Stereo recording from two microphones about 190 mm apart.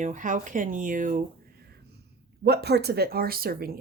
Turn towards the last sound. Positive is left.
turn(degrees=-50)  # may be behind; listen again after turning